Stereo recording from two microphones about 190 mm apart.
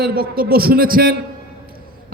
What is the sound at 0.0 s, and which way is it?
A man's voice, 50° right (ahead or behind).